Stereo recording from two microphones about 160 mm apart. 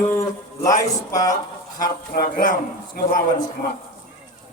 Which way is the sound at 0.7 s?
20° left (ahead or behind).